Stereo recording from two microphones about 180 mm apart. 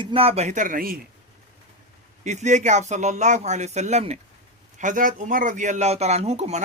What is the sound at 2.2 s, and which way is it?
Speech, 40° right (ahead or behind).